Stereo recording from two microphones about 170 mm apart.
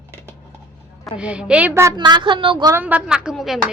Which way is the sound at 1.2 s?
5° right (ahead or behind).